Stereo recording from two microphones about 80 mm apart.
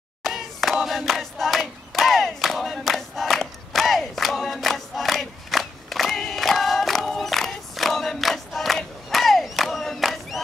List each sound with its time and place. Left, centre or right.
0.2 s hands: centre